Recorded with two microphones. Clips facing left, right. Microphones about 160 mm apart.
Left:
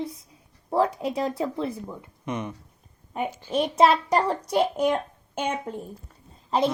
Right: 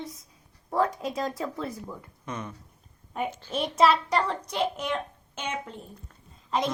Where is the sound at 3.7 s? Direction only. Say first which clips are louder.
Left 2 dB; 40° left (ahead or behind).